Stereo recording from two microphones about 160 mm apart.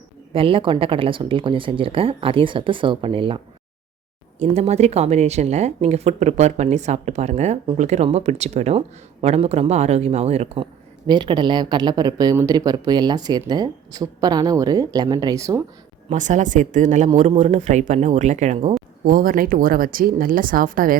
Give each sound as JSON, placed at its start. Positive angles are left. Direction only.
{"t": 0.3, "sound": "speech", "side_deg": -35}
{"t": 4.4, "sound": "a woman's voice", "side_deg": -45}
{"t": 16.1, "sound": "a woman's voice", "side_deg": -50}
{"t": 19.0, "sound": "speech", "side_deg": -60}